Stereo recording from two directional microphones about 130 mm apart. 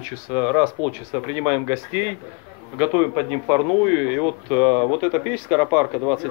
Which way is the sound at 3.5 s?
5° right (ahead or behind).